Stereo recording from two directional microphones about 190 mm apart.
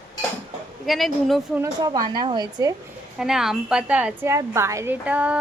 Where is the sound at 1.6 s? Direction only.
20° right (ahead or behind).